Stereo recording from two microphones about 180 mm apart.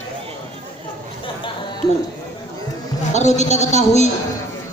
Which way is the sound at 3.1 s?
40° left (ahead or behind).